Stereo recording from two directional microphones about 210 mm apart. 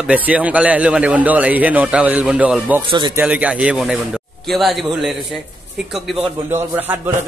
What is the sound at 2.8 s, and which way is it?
Speech, 20° right (ahead or behind).